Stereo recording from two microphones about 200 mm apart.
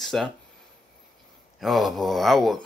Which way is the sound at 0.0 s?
Centre (ahead or behind).